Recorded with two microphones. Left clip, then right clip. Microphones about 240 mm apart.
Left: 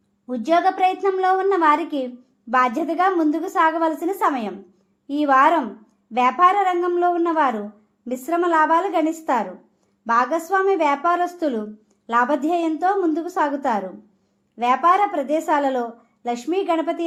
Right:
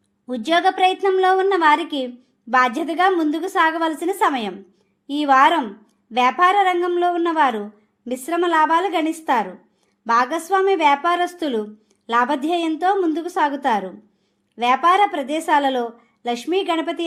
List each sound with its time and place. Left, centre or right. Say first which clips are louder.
0.3 s a woman's voice: even; right